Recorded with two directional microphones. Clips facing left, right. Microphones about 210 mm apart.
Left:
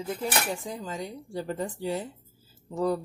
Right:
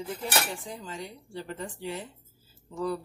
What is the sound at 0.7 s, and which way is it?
A woman's voice, 40° left (ahead or behind).